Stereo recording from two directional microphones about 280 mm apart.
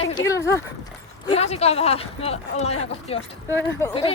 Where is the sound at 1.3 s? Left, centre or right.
Left.